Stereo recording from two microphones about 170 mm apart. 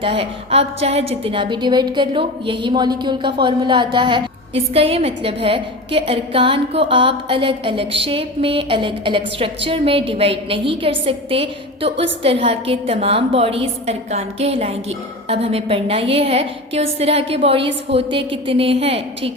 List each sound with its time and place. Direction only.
0.0 s a woman's voice: 35° right (ahead or behind)